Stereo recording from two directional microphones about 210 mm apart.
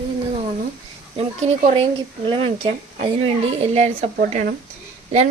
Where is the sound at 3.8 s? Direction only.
30° right (ahead or behind).